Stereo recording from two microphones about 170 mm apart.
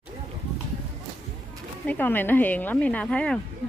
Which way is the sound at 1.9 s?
10° left (ahead or behind).